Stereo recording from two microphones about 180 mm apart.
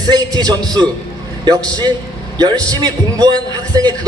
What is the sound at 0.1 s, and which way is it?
A man's voice, 20° right (ahead or behind).